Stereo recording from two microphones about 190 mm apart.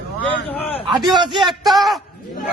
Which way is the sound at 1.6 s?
Centre (ahead or behind).